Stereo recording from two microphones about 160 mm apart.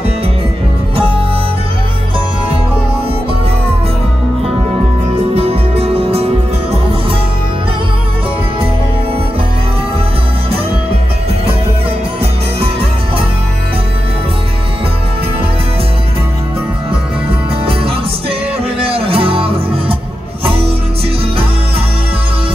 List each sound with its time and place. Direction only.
5.3 s music: 40° right (ahead or behind)
17.3 s music: 35° right (ahead or behind)